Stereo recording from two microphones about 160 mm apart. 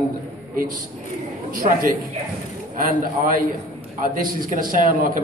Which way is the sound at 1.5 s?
60° right (ahead or behind).